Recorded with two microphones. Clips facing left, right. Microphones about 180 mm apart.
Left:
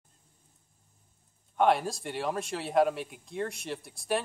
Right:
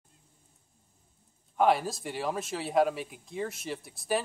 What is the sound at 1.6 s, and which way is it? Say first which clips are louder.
Speech: even; centre (ahead or behind).